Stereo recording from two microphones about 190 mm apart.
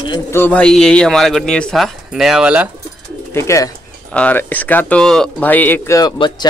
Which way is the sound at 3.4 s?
15° left (ahead or behind).